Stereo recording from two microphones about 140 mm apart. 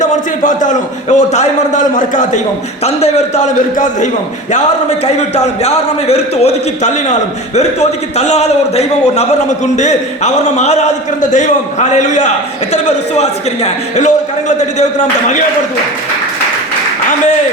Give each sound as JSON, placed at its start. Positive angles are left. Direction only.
{"t": 0.0, "sound": "a man's voice", "side_deg": 65}
{"t": 2.8, "sound": "a man's voice", "side_deg": 50}
{"t": 5.1, "sound": "a man's voice", "side_deg": 50}